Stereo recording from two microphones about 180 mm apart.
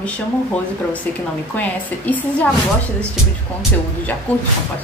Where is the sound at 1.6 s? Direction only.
10° left (ahead or behind).